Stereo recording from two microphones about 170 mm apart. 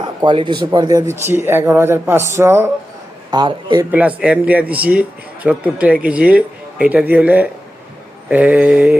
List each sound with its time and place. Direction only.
0.2 s a man's voice: 25° right (ahead or behind)
3.3 s speech: 25° right (ahead or behind)
3.9 s a man's voice: 5° right (ahead or behind)